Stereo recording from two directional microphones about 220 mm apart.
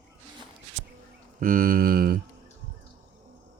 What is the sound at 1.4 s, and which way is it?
Speech, 40° right (ahead or behind).